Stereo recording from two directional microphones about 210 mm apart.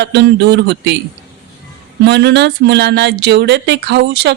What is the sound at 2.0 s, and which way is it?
Speech, 55° right (ahead or behind).